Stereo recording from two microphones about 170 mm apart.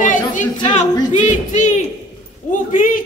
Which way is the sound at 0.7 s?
45° left (ahead or behind).